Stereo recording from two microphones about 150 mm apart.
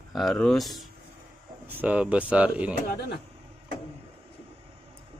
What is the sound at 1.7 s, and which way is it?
Speech, 10° right (ahead or behind).